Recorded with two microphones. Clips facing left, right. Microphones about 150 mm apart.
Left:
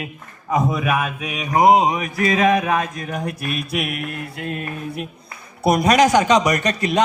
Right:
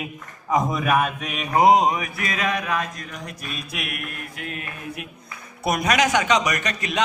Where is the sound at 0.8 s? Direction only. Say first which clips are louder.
Even; 45° right (ahead or behind).